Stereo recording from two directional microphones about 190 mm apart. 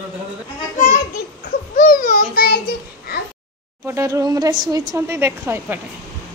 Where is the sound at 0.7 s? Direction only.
50° left (ahead or behind).